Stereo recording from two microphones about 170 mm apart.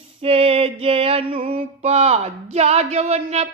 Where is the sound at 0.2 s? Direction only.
35° right (ahead or behind).